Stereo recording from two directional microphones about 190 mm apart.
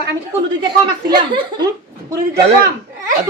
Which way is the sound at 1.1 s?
25° right (ahead or behind).